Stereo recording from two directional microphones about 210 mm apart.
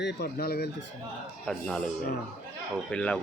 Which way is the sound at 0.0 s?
50° left (ahead or behind).